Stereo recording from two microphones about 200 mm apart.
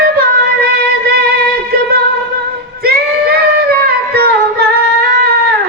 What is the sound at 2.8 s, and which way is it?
Singing, 50° right (ahead or behind).